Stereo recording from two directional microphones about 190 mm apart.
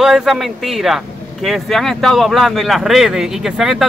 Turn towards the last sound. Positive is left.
turn(degrees=0)  # may be behind; listen again after turning